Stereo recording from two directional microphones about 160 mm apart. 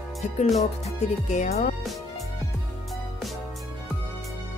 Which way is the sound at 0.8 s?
45° left (ahead or behind).